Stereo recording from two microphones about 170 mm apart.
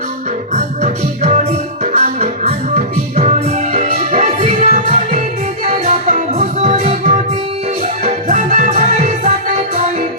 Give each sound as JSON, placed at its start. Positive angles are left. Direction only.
{"t": 0.5, "sound": "music", "side_deg": -40}